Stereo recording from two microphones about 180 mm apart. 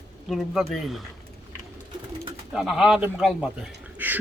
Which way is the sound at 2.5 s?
Centre (ahead or behind).